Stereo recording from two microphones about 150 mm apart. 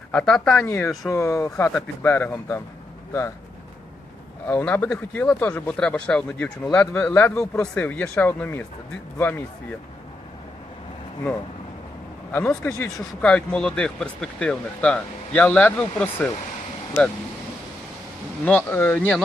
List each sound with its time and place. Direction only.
0.1 s speech: 5° left (ahead or behind)
1.0 s speech: 20° left (ahead or behind)
4.4 s speech: 10° left (ahead or behind)
12.3 s speech: 10° left (ahead or behind)
18.4 s speech: 10° left (ahead or behind)